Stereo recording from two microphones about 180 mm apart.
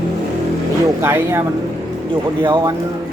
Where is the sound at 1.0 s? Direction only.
15° right (ahead or behind).